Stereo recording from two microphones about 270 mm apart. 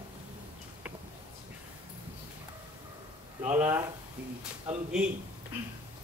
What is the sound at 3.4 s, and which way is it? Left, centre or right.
Speech, centre.